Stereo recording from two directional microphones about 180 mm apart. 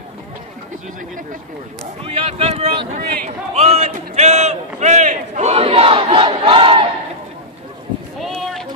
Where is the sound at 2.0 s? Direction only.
35° right (ahead or behind).